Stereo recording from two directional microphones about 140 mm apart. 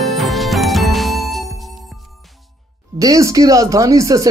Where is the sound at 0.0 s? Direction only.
Centre (ahead or behind).